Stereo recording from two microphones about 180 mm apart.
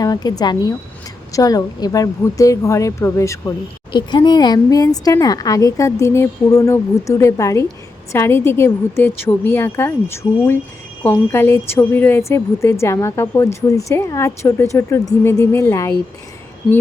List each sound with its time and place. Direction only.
0.0 s a woman's voice: 20° left (ahead or behind)